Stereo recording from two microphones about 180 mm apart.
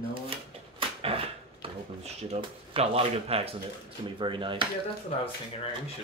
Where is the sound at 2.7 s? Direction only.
35° right (ahead or behind).